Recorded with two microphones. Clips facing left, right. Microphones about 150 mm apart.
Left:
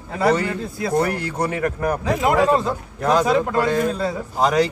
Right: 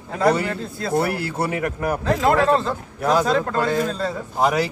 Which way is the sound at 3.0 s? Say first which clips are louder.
Left 1 dB; 10° right (ahead or behind).